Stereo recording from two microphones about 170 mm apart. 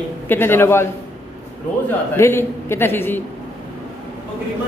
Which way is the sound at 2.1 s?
15° left (ahead or behind).